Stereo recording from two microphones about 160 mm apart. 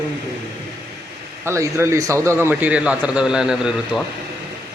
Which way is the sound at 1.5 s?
15° right (ahead or behind).